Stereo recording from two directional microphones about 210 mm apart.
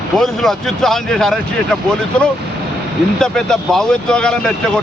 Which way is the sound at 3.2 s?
5° left (ahead or behind).